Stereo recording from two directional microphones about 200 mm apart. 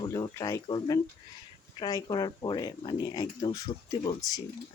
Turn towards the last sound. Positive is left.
turn(degrees=20)  # may be behind; listen again after turning